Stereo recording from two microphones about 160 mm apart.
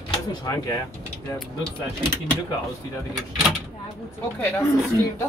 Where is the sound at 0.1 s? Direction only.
25° left (ahead or behind).